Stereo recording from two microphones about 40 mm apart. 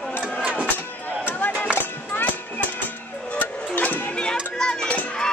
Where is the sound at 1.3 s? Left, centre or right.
Left.